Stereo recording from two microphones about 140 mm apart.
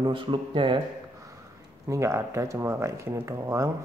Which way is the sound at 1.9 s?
20° right (ahead or behind).